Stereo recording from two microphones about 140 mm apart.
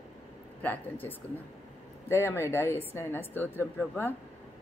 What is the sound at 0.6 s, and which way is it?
Speech, 15° left (ahead or behind).